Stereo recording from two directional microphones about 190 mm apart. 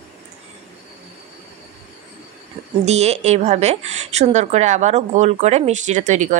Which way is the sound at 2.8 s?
35° right (ahead or behind).